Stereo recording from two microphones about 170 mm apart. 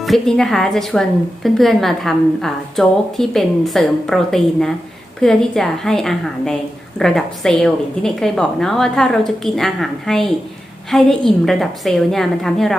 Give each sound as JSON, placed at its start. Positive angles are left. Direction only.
{"t": 0.0, "sound": "a woman's voice", "side_deg": 0}